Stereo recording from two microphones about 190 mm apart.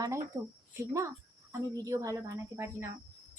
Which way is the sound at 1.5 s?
15° right (ahead or behind).